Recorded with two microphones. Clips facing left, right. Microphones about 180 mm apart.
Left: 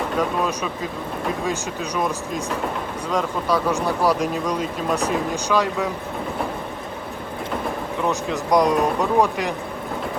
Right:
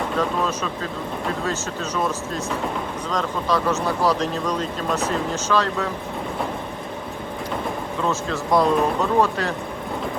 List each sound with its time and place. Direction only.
0.2 s speech: 10° left (ahead or behind)
8.0 s speech: 15° left (ahead or behind)